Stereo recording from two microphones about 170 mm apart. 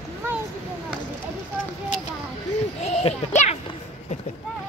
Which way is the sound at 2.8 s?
35° left (ahead or behind).